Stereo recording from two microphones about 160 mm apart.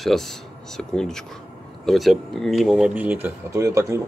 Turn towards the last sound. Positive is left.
turn(degrees=-20)  # may be behind; listen again after turning